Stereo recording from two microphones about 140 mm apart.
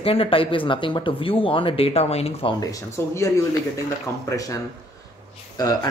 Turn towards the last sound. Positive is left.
turn(degrees=25)  # may be behind; listen again after turning